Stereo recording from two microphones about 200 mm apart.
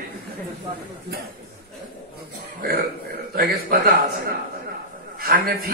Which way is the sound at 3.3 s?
50° right (ahead or behind).